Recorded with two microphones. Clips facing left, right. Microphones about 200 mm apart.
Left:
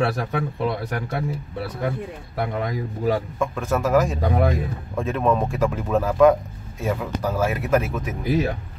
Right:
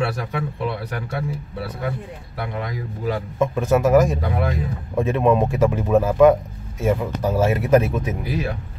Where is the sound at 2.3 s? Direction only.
45° left (ahead or behind).